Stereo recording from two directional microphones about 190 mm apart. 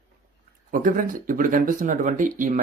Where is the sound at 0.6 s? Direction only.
45° right (ahead or behind).